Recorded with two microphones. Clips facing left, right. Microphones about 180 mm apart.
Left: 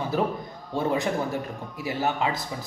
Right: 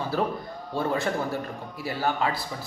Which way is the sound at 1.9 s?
15° left (ahead or behind).